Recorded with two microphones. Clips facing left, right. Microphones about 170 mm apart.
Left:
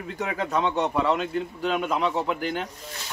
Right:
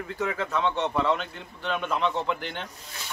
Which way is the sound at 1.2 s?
10° left (ahead or behind).